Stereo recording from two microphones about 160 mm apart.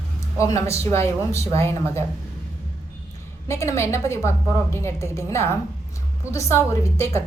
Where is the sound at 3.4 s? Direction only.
15° left (ahead or behind).